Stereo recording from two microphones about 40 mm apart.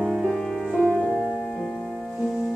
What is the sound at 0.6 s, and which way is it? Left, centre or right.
Music, centre.